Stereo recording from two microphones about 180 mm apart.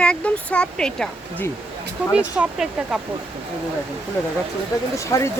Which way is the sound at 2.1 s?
5° right (ahead or behind).